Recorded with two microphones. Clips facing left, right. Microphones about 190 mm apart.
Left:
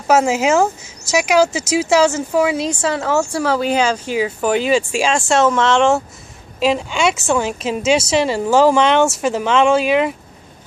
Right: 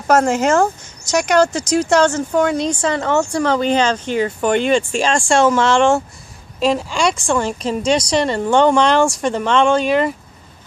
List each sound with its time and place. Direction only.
0.0 s speech: 5° left (ahead or behind)